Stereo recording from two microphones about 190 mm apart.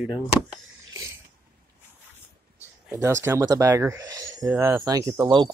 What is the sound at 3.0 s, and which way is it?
Speech, 15° right (ahead or behind).